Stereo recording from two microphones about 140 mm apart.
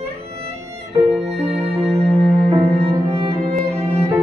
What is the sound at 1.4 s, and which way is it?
Music, 45° right (ahead or behind).